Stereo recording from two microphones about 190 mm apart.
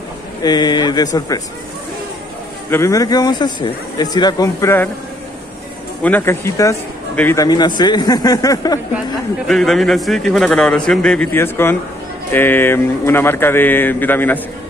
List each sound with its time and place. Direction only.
0.4 s speech: 20° left (ahead or behind)
2.7 s speech: 15° left (ahead or behind)
6.0 s speech: 10° left (ahead or behind)
9.5 s a man's voice: centre (ahead or behind)